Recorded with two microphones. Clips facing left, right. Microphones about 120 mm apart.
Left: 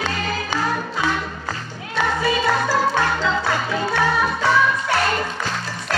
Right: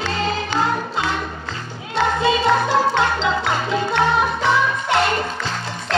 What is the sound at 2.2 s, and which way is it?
Music, 25° right (ahead or behind).